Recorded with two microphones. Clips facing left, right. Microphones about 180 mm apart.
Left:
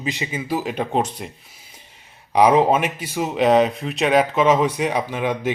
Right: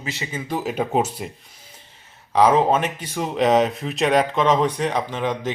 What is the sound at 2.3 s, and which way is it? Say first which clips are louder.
Speech: left 1 dB; 15° left (ahead or behind).